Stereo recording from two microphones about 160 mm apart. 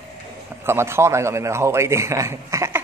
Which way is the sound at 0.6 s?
15° right (ahead or behind).